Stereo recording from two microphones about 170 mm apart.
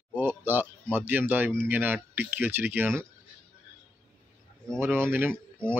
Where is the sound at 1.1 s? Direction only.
10° right (ahead or behind).